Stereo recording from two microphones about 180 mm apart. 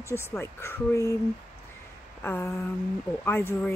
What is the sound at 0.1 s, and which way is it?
Speech, 15° left (ahead or behind).